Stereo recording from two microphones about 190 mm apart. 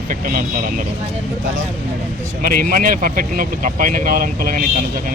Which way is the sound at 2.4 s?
50° right (ahead or behind).